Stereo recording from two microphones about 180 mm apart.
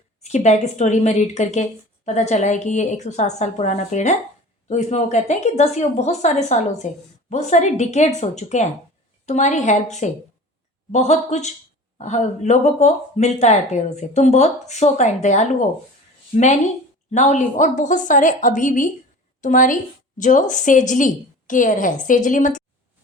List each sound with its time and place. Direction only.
0.2 s a woman's voice: 40° left (ahead or behind)